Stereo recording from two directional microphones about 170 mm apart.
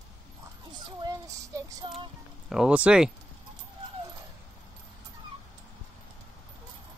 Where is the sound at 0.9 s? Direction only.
20° right (ahead or behind).